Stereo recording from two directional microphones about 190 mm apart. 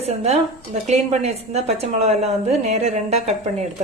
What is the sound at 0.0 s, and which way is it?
A woman's voice, 35° right (ahead or behind).